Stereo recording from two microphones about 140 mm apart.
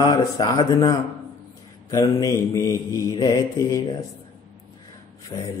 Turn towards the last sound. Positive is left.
turn(degrees=20)  # may be behind; listen again after turning